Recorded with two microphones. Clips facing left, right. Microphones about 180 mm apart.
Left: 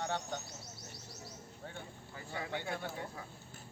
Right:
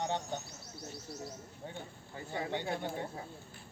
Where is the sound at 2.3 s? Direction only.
25° right (ahead or behind).